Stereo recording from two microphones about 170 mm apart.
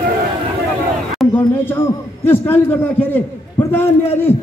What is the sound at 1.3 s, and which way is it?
A man's voice, 10° left (ahead or behind).